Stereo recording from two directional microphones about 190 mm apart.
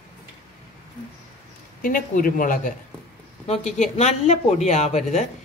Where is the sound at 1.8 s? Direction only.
50° left (ahead or behind).